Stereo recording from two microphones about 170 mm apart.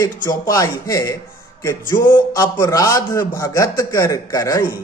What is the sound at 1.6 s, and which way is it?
Music, 15° left (ahead or behind).